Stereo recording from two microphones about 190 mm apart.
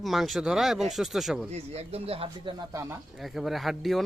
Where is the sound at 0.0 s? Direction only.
Centre (ahead or behind).